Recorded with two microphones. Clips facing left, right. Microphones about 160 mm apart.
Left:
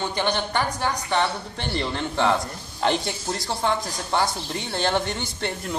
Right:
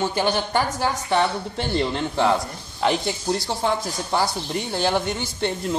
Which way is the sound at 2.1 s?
5° right (ahead or behind).